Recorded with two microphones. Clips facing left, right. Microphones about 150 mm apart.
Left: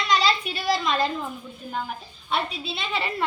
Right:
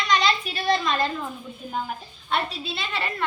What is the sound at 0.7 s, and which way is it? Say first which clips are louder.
Speech: even; 5° left (ahead or behind).